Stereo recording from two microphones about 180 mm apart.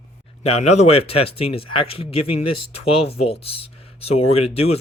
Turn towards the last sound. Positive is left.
turn(degrees=35)  # may be behind; listen again after turning